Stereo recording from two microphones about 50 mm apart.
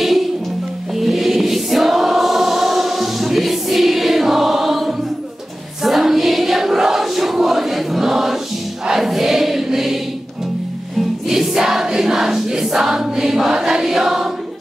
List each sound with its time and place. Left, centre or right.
0.0 s music: centre
0.9 s choir: centre
5.8 s a sound: centre
8.8 s choir: centre
11.2 s choir: centre